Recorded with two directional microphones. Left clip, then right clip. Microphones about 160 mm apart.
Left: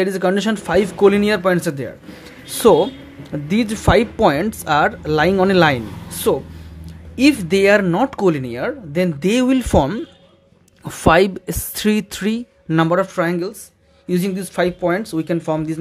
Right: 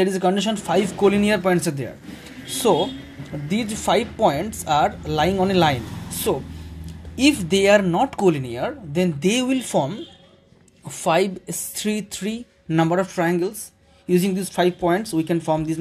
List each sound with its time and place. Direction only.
0.0 s speech: 25° left (ahead or behind)
2.4 s speech: 35° left (ahead or behind)
8.1 s speech: 25° left (ahead or behind)